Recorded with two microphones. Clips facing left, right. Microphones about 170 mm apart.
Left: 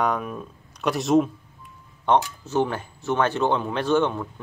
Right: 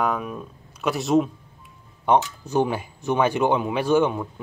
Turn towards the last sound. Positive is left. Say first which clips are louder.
# right 2 dB
turn(degrees=-10)  # may be behind; listen again after turning